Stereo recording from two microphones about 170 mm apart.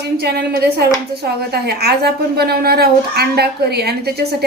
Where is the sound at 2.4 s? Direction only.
65° right (ahead or behind).